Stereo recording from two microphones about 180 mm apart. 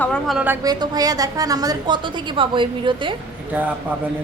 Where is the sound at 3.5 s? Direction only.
10° right (ahead or behind).